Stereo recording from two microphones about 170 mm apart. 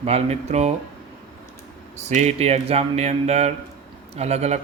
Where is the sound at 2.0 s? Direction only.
40° right (ahead or behind).